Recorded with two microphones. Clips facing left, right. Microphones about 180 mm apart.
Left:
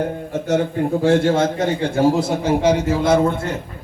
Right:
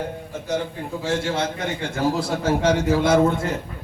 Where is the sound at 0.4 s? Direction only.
70° left (ahead or behind).